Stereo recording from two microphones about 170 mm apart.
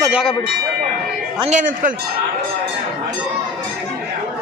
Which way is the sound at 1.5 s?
50° right (ahead or behind).